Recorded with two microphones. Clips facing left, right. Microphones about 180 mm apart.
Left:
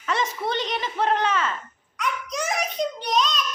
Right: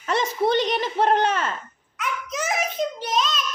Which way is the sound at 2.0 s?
5° right (ahead or behind).